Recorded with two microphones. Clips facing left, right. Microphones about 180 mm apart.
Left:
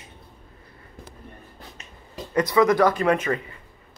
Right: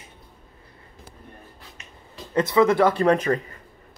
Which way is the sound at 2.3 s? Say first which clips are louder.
Even; 25° right (ahead or behind).